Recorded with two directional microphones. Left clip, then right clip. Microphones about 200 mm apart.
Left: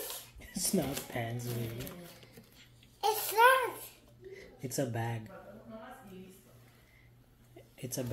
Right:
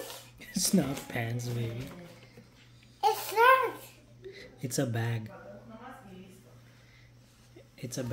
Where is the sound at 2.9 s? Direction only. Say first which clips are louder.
Right 2 dB; 25° right (ahead or behind).